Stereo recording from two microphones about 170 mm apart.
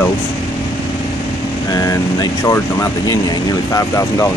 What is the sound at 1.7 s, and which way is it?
Speech, 20° left (ahead or behind).